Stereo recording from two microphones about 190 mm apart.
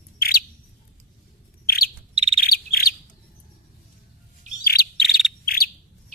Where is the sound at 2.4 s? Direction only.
50° left (ahead or behind).